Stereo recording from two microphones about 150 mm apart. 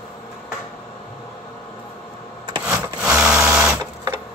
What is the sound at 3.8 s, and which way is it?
Printer, 25° right (ahead or behind).